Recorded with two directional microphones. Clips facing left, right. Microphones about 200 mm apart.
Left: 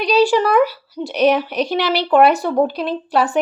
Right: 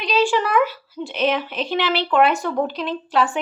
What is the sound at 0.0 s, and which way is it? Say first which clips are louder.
A woman's voice: left 5 dB; 40° left (ahead or behind).